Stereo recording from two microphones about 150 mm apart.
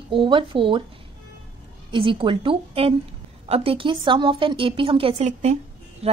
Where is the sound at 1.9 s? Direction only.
35° right (ahead or behind).